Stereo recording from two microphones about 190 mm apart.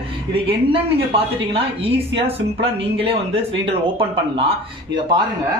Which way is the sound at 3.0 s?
30° right (ahead or behind).